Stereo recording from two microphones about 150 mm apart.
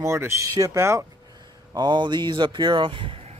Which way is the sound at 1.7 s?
30° right (ahead or behind).